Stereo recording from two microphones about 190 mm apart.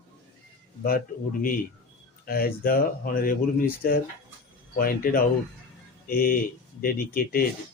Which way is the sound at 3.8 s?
50° left (ahead or behind).